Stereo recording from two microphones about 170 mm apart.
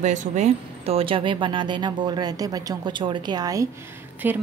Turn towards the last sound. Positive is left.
turn(degrees=-10)  # may be behind; listen again after turning